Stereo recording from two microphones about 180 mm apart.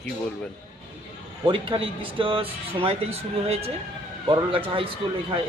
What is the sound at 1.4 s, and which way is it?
Speech, 30° right (ahead or behind).